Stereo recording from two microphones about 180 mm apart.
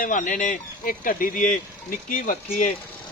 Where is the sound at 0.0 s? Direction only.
45° left (ahead or behind).